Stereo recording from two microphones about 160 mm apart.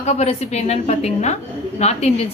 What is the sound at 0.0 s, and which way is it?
A woman's voice, 45° left (ahead or behind).